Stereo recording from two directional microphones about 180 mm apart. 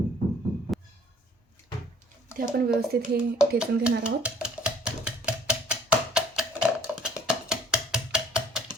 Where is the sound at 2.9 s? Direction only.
60° right (ahead or behind).